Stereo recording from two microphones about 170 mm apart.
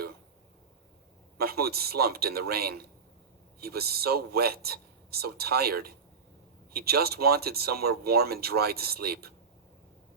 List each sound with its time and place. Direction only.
1.4 s speech: 65° right (ahead or behind)